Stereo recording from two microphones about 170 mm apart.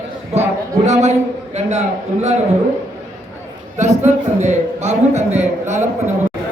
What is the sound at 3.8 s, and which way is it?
A man's voice, 45° right (ahead or behind).